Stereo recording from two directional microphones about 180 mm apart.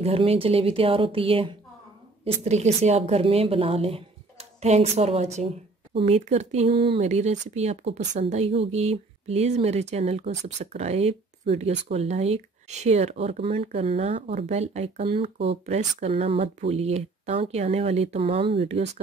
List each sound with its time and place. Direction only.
0.0 s speech: 35° right (ahead or behind)